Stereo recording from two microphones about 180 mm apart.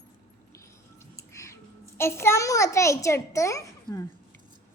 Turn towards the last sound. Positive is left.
turn(degrees=15)  # may be behind; listen again after turning